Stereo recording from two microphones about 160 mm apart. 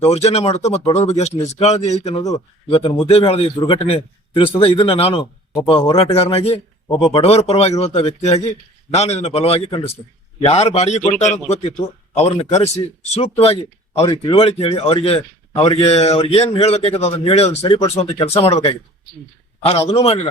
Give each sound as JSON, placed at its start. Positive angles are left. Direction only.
{"t": 0.1, "sound": "a man's voice", "side_deg": 40}
{"t": 2.2, "sound": "speech", "side_deg": 20}
{"t": 2.7, "sound": "a man's voice", "side_deg": 30}